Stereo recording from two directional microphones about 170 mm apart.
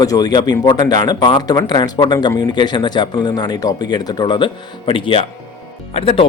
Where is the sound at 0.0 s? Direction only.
20° left (ahead or behind).